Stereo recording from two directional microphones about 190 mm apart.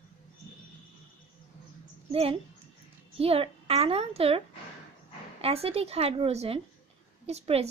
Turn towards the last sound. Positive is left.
turn(degrees=-35)  # may be behind; listen again after turning